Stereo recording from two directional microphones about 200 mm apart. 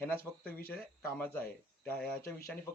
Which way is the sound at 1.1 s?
10° left (ahead or behind).